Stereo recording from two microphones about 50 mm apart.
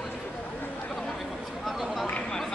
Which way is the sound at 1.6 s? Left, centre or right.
Centre.